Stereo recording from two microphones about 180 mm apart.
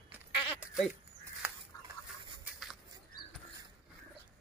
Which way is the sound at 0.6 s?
Centre (ahead or behind).